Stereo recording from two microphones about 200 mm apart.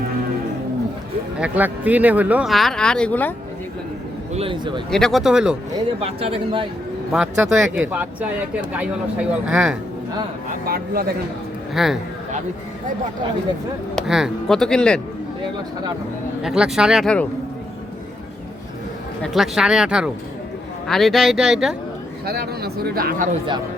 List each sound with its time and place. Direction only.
1.4 s speech: 10° right (ahead or behind); by 3.3 s 10° left (ahead or behind)
4.4 s speech: 25° right (ahead or behind)
4.9 s speech: 5° left (ahead or behind)
5.7 s speech: 30° right (ahead or behind)
7.1 s speech: 5° right (ahead or behind)
11.7 s speech: centre (ahead or behind)
13.9 s speech: centre (ahead or behind)
16.4 s speech: 5° right (ahead or behind)
19.2 s speech: centre (ahead or behind)
22.3 s a man's voice: 50° right (ahead or behind)